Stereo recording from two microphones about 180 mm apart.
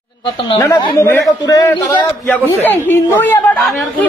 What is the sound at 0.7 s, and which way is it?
A man's voice, 25° left (ahead or behind).